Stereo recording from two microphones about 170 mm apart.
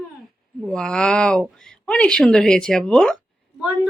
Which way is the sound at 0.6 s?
5° left (ahead or behind).